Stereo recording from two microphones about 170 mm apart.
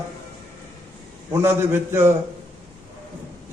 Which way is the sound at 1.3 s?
15° right (ahead or behind).